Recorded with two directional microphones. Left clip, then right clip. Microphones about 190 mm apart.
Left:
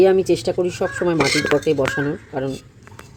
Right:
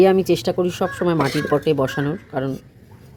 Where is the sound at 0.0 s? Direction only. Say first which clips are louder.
Even; 5° right (ahead or behind).